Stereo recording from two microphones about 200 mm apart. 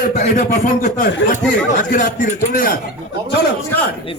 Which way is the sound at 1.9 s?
40° left (ahead or behind).